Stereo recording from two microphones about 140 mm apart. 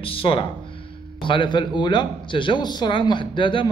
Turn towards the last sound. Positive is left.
turn(degrees=35)  # may be behind; listen again after turning